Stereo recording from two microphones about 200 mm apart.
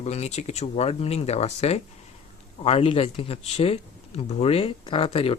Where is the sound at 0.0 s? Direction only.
35° left (ahead or behind).